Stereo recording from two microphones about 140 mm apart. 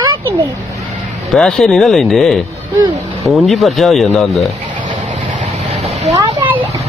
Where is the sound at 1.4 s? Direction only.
5° left (ahead or behind).